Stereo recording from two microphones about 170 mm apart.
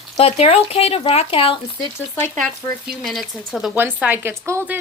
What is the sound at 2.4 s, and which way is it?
Speech, centre (ahead or behind).